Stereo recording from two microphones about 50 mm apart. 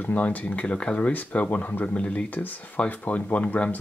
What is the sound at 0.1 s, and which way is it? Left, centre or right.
Speech, left.